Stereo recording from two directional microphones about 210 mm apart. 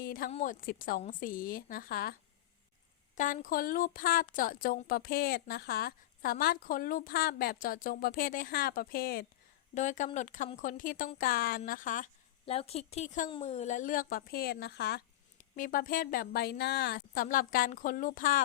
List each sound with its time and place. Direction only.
0.0 s a sound: 40° left (ahead or behind)
0.3 s a woman's voice: 40° left (ahead or behind)
3.2 s a woman's voice: 40° left (ahead or behind); by 15.0 s 55° left (ahead or behind)
15.5 s a woman's voice: 40° left (ahead or behind)